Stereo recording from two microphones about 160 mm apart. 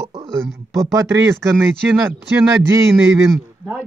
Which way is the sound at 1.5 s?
10° right (ahead or behind).